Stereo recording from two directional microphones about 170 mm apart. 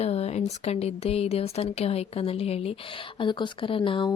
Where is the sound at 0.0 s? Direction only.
35° left (ahead or behind).